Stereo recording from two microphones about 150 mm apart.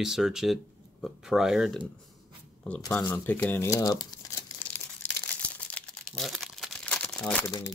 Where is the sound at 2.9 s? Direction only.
10° left (ahead or behind).